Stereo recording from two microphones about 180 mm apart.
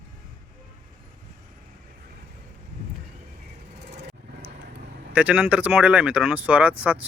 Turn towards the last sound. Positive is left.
turn(degrees=-10)  # may be behind; listen again after turning